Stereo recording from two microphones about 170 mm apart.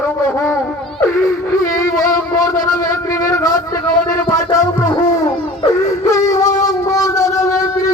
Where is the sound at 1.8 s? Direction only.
20° left (ahead or behind).